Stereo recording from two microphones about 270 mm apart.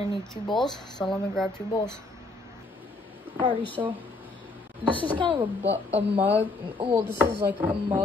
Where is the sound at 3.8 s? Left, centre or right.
Centre.